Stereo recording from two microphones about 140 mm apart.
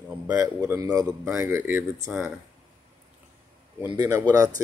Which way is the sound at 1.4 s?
15° right (ahead or behind).